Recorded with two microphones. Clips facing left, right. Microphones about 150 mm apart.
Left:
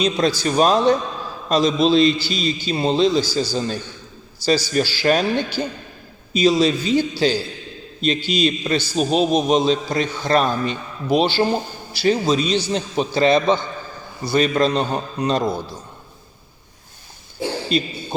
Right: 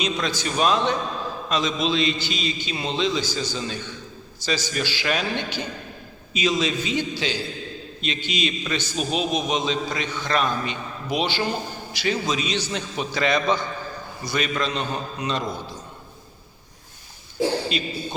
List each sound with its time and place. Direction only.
0.0 s a man's voice: 35° left (ahead or behind)
17.7 s a man's voice: 35° left (ahead or behind)